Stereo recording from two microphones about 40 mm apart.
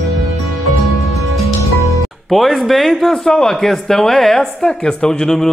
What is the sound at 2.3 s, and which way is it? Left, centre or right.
Speech, centre.